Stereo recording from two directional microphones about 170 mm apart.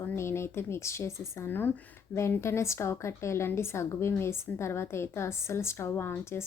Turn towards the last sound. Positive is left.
turn(degrees=15)  # may be behind; listen again after turning